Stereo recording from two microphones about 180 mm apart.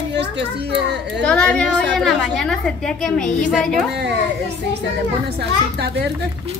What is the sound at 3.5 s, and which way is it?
Speech, centre (ahead or behind).